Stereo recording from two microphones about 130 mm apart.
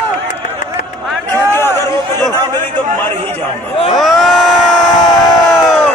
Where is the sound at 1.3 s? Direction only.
20° left (ahead or behind).